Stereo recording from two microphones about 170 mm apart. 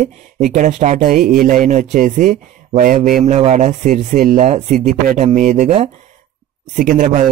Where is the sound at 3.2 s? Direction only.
40° right (ahead or behind).